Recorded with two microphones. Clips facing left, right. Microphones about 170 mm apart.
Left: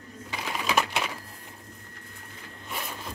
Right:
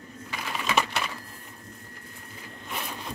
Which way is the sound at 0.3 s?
15° left (ahead or behind).